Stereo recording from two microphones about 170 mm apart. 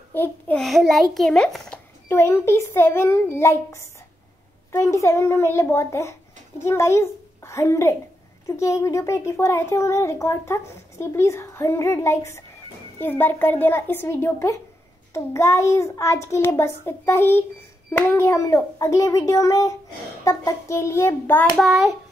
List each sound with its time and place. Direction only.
0.1 s a child's voice: 10° left (ahead or behind)
0.6 s a child's voice: centre (ahead or behind)
2.0 s a child's voice: 15° left (ahead or behind)
21.5 s a child's voice: centre (ahead or behind)